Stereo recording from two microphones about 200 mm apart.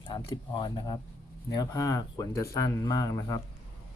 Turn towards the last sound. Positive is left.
turn(degrees=15)  # may be behind; listen again after turning